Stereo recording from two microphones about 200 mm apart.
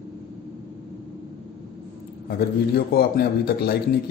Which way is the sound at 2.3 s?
50° left (ahead or behind).